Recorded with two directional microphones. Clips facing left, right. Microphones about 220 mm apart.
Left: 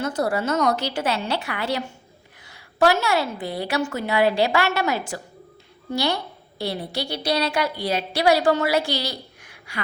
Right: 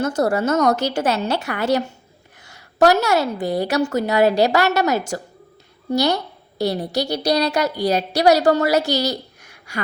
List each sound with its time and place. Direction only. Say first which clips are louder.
0.0 s a woman's voice: right 4 dB; 45° right (ahead or behind)